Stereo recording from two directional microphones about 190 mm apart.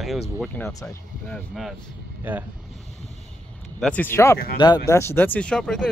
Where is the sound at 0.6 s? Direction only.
10° left (ahead or behind); by 2.4 s 10° right (ahead or behind).